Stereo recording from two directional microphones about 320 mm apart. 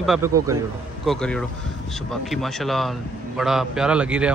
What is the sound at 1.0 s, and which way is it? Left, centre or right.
Speech, centre.